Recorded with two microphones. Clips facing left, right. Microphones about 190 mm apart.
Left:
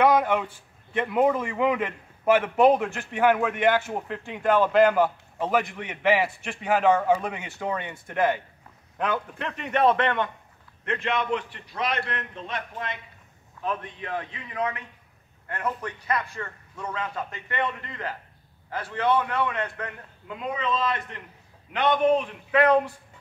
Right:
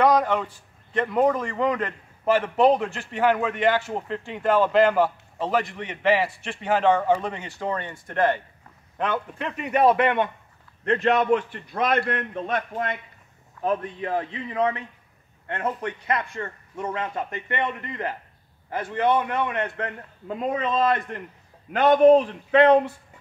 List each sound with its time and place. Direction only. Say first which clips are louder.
0.0 s a man's voice: right 1 dB; 5° left (ahead or behind); by 10.3 s 15° right (ahead or behind)
10.9 s a man's voice: right 7 dB; 40° right (ahead or behind)
13.6 s a man's voice: right 6 dB; 40° right (ahead or behind); by 19.9 s 20° right (ahead or behind)
20.2 s a man's voice: right 3 dB; 40° right (ahead or behind)